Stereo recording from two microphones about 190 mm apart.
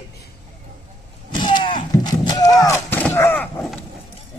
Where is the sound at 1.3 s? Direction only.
25° left (ahead or behind).